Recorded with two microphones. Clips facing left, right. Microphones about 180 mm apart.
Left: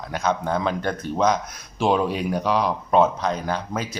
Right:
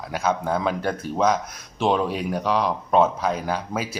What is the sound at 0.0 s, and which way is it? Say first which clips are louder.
Speech: even; 5° right (ahead or behind).